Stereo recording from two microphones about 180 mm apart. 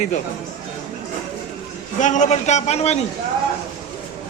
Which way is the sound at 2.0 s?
40° left (ahead or behind).